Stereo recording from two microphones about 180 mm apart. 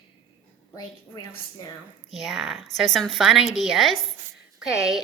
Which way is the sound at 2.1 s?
Centre (ahead or behind).